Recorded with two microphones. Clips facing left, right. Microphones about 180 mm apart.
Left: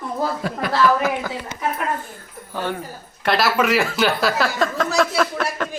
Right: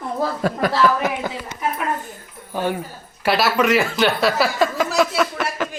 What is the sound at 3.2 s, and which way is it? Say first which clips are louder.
Speech: right 1 dB; centre (ahead or behind).